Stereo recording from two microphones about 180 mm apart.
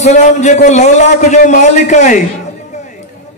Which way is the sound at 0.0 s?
40° left (ahead or behind).